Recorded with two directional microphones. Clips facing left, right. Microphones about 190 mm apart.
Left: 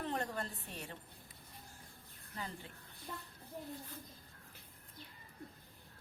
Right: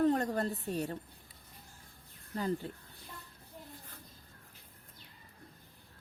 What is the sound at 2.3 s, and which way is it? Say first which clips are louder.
Speech: right 12 dB; 40° right (ahead or behind).